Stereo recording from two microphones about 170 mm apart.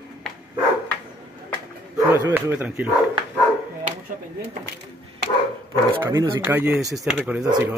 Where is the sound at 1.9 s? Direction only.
15° right (ahead or behind).